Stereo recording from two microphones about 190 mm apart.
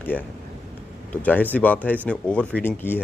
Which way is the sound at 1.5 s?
10° left (ahead or behind).